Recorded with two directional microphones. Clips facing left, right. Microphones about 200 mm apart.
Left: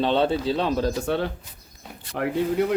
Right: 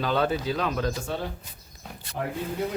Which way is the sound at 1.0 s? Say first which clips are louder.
Left 7 dB; 65° left (ahead or behind).